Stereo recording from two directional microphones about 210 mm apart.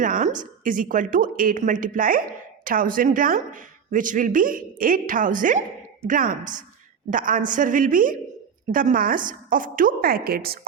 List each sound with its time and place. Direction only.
0.0 s speech: 40° right (ahead or behind)